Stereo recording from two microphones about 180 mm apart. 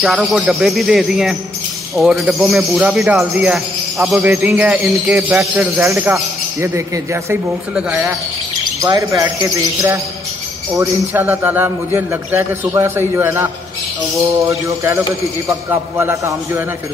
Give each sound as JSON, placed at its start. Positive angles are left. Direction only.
{"t": 0.0, "sound": "speech", "side_deg": -5}
{"t": 14.5, "sound": "speech", "side_deg": -15}